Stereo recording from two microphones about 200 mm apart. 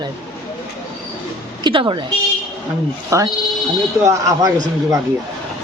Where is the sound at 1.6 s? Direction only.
25° right (ahead or behind).